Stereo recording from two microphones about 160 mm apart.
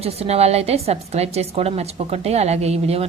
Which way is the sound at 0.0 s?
40° right (ahead or behind).